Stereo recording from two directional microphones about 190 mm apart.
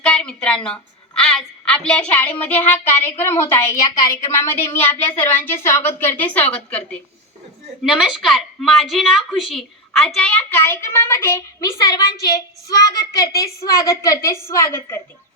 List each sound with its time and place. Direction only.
0.0 s a woman's voice: 5° left (ahead or behind)